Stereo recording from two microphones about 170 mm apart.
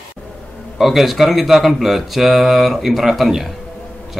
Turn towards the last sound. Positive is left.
turn(degrees=0)  # may be behind; listen again after turning